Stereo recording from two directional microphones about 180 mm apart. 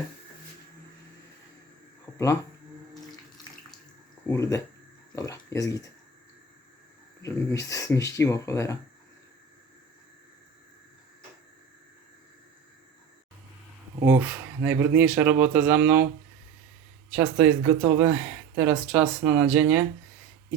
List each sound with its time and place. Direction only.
2.1 s speech: 15° left (ahead or behind)
2.9 s water: centre (ahead or behind)
4.3 s speech: 15° left (ahead or behind)
7.2 s speech: 20° left (ahead or behind)
13.9 s speech: 10° right (ahead or behind)
17.1 s speech: 5° right (ahead or behind)